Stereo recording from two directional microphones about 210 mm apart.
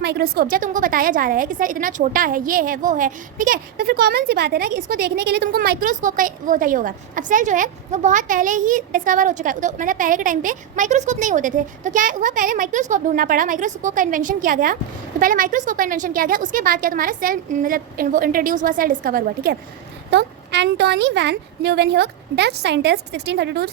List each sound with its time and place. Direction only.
0.0 s a woman's voice: 50° right (ahead or behind)
0.5 s a woman's voice: 40° right (ahead or behind)